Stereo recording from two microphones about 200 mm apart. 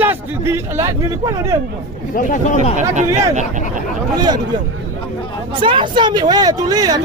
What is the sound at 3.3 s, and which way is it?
Speech, 35° right (ahead or behind).